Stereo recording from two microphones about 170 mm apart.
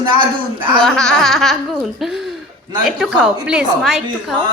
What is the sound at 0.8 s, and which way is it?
A woman's voice, 5° left (ahead or behind).